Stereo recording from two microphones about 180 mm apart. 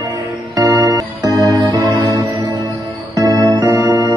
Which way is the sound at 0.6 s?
20° right (ahead or behind).